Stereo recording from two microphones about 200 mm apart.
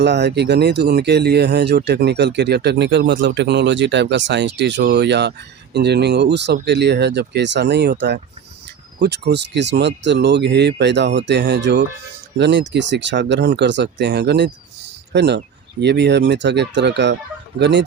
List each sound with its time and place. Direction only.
0.0 s speech: 55° right (ahead or behind)